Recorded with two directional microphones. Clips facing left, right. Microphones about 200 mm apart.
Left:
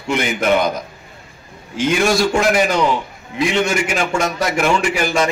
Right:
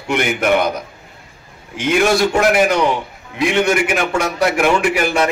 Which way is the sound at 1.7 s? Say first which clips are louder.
Right 1 dB; 60° right (ahead or behind).